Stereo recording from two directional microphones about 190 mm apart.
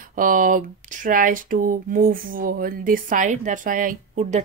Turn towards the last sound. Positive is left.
turn(degrees=-35)  # may be behind; listen again after turning